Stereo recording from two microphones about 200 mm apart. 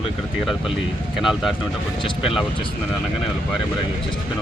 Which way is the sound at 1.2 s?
Centre (ahead or behind).